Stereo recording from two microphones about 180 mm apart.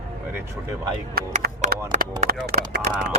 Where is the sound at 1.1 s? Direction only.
55° right (ahead or behind).